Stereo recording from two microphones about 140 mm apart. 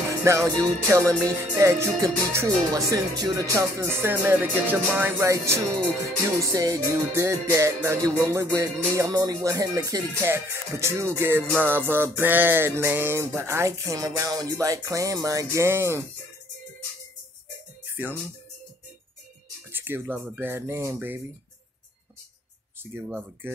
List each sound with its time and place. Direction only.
0.2 s speech: 20° right (ahead or behind)
19.7 s speech: 15° right (ahead or behind)
22.9 s speech: 10° right (ahead or behind)